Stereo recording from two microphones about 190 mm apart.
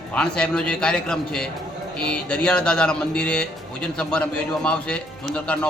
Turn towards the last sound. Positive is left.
turn(degrees=5)  # may be behind; listen again after turning